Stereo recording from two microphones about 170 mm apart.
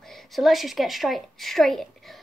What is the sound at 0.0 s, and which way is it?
A woman's voice, centre (ahead or behind).